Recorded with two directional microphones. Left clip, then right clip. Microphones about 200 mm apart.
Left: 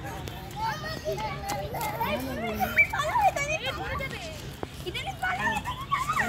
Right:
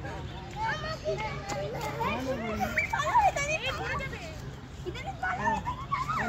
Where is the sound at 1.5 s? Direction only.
50° left (ahead or behind).